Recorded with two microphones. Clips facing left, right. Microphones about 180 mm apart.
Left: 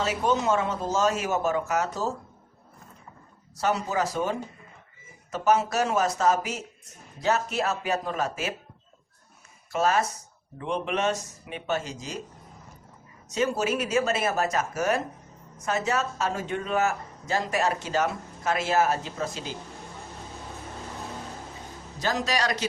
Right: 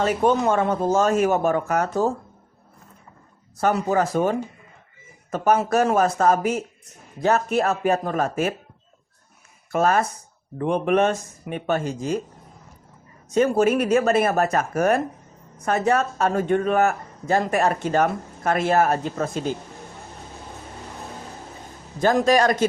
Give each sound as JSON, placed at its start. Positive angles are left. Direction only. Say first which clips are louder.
{"t": 0.0, "sound": "speech", "louder": "right 6 dB", "side_deg": -55}
{"t": 3.6, "sound": "speech", "louder": "right 6 dB", "side_deg": -55}
{"t": 9.7, "sound": "speech", "louder": "right 4 dB", "side_deg": -55}
{"t": 13.3, "sound": "speech", "louder": "right 8 dB", "side_deg": -55}
{"t": 21.9, "sound": "speech", "louder": "right 10 dB", "side_deg": -50}